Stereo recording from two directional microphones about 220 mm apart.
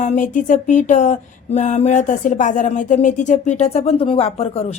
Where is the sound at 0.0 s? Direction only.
35° left (ahead or behind).